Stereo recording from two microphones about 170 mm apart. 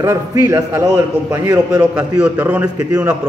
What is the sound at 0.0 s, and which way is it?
A man's voice, 20° right (ahead or behind).